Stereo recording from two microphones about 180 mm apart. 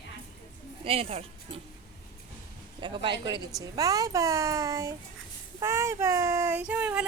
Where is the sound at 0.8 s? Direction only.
35° right (ahead or behind).